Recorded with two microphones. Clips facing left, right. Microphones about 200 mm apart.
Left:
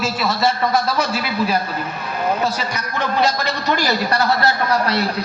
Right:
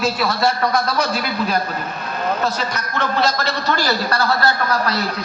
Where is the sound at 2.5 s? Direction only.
10° left (ahead or behind); by 5.0 s 25° left (ahead or behind).